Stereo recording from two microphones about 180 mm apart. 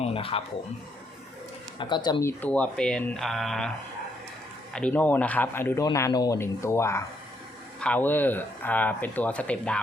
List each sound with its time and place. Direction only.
0.0 s a sound: 30° left (ahead or behind)
1.8 s speech: 25° left (ahead or behind)
2.4 s speech: 5° left (ahead or behind)
4.7 s speech: 5° left (ahead or behind)